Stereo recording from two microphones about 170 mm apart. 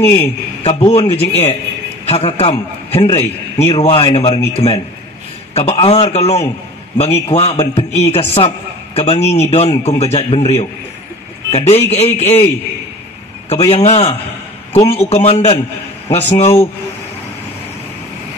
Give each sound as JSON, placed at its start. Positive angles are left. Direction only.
{"t": 0.0, "sound": "a man's voice", "side_deg": 35}
{"t": 13.7, "sound": "a man's voice", "side_deg": 40}